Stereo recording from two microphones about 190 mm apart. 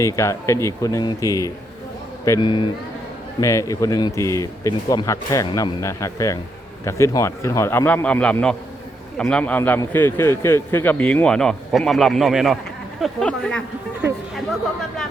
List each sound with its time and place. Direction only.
0.0 s a man's voice: 15° left (ahead or behind)